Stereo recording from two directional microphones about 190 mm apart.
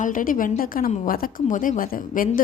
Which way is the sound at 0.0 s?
45° left (ahead or behind).